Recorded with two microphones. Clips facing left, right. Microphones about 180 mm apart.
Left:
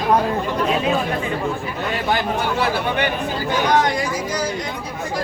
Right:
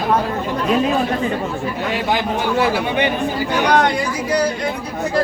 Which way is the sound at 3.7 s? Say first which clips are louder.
Right 2 dB; 65° right (ahead or behind).